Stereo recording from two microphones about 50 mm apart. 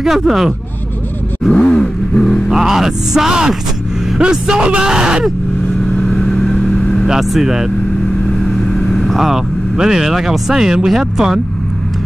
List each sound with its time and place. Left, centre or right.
0.0 s speech: centre
1.5 s vehicle: centre
2.5 s speech: centre
5.9 s vehicle: centre
7.1 s speech: centre
8.5 s speech: centre